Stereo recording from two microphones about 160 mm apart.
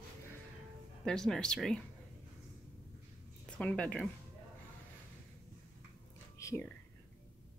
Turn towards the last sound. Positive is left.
turn(degrees=20)  # may be behind; listen again after turning